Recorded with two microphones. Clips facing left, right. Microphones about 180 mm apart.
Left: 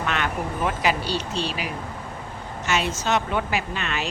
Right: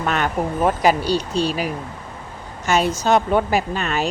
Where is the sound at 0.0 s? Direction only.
40° right (ahead or behind).